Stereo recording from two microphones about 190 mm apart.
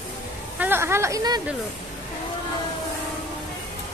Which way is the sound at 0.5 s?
10° right (ahead or behind).